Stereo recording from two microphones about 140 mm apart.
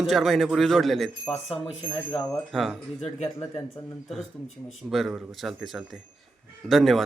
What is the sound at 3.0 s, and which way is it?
Speech, 50° left (ahead or behind).